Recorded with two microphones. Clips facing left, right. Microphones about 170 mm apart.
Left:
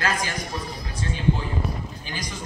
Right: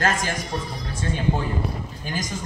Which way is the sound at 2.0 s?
45° right (ahead or behind).